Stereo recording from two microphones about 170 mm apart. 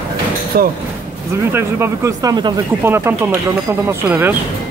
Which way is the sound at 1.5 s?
15° right (ahead or behind).